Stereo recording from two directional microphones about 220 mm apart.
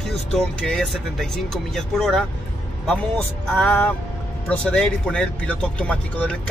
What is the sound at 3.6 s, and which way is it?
Music, 10° left (ahead or behind).